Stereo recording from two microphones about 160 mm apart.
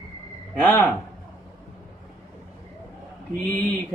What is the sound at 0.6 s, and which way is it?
Speech, 10° left (ahead or behind).